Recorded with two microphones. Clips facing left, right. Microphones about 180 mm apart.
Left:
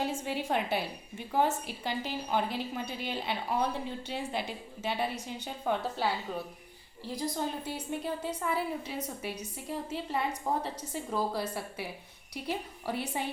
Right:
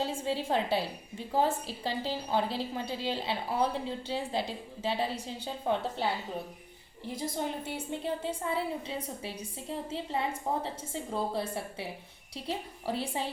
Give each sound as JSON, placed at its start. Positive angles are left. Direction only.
{"t": 0.0, "sound": "a woman's voice", "side_deg": -30}